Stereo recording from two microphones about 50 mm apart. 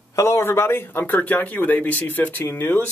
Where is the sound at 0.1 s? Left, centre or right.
Left.